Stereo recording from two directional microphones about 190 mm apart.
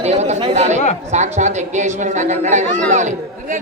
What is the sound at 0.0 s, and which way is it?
Chatter, 35° right (ahead or behind).